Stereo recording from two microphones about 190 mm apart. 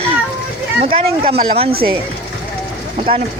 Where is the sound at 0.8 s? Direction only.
30° right (ahead or behind).